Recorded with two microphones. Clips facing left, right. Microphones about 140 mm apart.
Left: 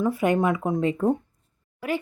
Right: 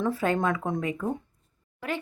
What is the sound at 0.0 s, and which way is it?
Speech, 15° left (ahead or behind).